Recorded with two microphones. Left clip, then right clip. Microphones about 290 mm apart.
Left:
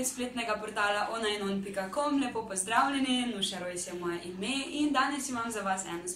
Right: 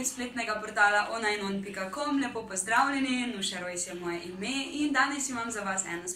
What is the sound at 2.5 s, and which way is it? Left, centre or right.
A woman's voice, centre.